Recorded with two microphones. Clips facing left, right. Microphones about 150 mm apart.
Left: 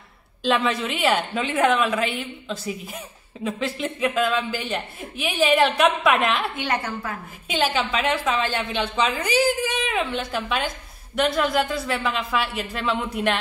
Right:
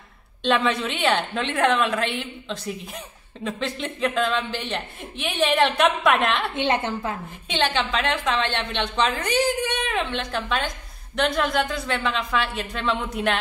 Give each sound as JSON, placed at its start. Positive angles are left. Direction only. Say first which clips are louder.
{"t": 0.4, "sound": "a woman's voice", "louder": "even", "side_deg": 0}
{"t": 6.5, "sound": "a woman's voice", "louder": "right 3 dB", "side_deg": -25}
{"t": 7.4, "sound": "a woman's voice", "louder": "left 1 dB", "side_deg": 5}